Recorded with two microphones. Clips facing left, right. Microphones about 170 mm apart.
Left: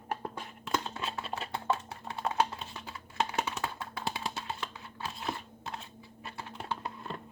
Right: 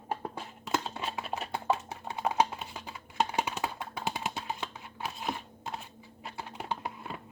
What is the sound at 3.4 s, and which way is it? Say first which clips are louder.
Tap: right 2 dB; 15° right (ahead or behind).